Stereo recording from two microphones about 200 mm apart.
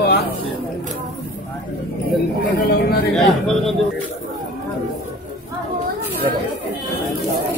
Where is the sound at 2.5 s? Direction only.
45° left (ahead or behind).